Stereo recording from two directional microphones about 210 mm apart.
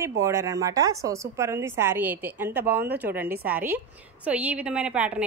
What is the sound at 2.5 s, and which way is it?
Speech, 50° right (ahead or behind).